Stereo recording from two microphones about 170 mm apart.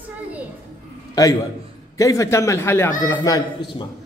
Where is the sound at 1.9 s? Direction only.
20° left (ahead or behind).